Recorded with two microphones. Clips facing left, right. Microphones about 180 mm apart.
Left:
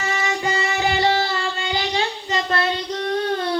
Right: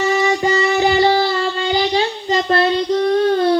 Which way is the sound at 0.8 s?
35° right (ahead or behind).